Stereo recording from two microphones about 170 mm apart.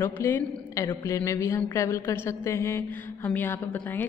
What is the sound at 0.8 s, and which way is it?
Mantra, 20° left (ahead or behind).